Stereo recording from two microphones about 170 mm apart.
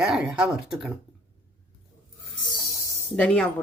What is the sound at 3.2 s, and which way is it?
Speech, 5° left (ahead or behind).